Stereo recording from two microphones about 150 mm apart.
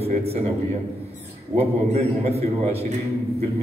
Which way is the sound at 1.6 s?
45° right (ahead or behind).